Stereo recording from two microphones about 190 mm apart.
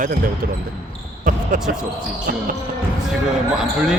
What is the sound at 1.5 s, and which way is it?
Speech, 45° right (ahead or behind).